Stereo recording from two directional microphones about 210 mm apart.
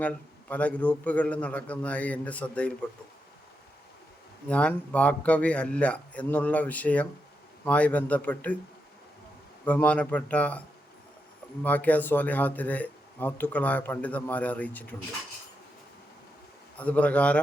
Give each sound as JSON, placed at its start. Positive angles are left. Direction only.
{"t": 0.0, "sound": "speech", "side_deg": 5}
{"t": 4.4, "sound": "speech", "side_deg": 5}
{"t": 9.6, "sound": "speech", "side_deg": 5}
{"t": 11.6, "sound": "speech", "side_deg": 10}
{"t": 16.7, "sound": "a man's voice", "side_deg": 5}